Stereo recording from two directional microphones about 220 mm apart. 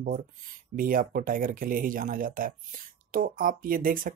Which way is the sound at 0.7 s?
40° right (ahead or behind).